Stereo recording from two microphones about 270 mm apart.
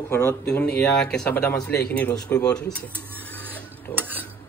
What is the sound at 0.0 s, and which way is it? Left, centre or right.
A man's voice, centre.